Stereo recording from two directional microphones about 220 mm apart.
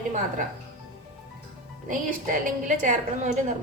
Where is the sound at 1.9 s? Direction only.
35° right (ahead or behind).